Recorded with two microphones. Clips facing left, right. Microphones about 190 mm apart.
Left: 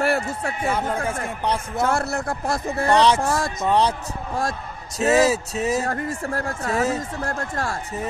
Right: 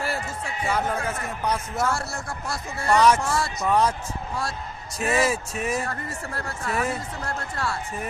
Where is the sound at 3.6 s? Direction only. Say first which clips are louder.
Left 2 dB; 30° left (ahead or behind).